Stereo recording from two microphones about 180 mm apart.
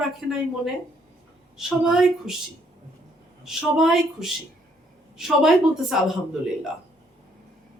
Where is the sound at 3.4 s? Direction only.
Centre (ahead or behind).